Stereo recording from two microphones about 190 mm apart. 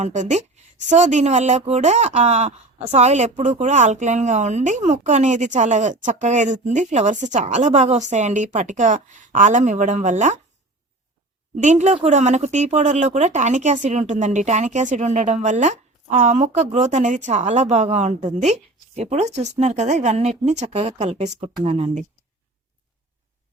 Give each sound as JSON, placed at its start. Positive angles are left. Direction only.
{"t": 0.0, "sound": "speech", "side_deg": -40}
{"t": 11.5, "sound": "speech", "side_deg": -40}